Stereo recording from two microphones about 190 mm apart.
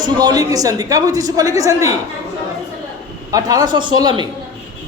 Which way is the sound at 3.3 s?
20° right (ahead or behind).